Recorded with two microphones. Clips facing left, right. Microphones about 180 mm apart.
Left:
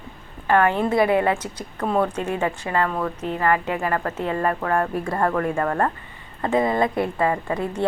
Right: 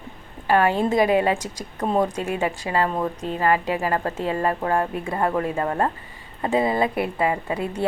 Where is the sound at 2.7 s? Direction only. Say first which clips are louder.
Even; 25° right (ahead or behind).